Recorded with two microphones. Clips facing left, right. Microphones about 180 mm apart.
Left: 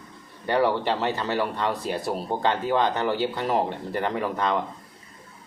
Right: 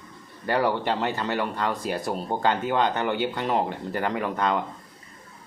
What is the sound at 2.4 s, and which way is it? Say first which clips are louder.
Speech: even; 35° left (ahead or behind).